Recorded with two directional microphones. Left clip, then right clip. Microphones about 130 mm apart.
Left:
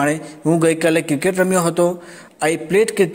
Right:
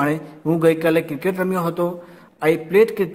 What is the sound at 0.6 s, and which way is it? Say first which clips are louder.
A man's voice: even; 25° left (ahead or behind).